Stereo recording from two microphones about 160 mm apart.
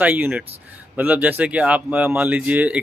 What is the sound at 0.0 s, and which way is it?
Speech, 10° right (ahead or behind).